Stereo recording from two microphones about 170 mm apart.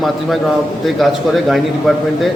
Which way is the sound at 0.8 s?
Centre (ahead or behind).